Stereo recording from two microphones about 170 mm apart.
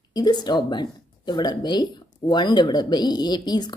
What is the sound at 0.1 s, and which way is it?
Speech, 25° left (ahead or behind).